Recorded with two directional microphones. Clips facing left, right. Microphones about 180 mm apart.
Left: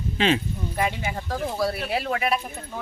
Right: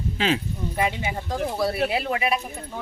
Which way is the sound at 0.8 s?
10° right (ahead or behind).